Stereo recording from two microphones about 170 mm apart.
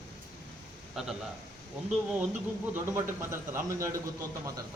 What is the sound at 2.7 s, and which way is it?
Speech, 15° right (ahead or behind).